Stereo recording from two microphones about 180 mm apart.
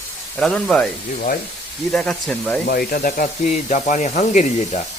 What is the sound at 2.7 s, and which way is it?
Speech, 55° left (ahead or behind).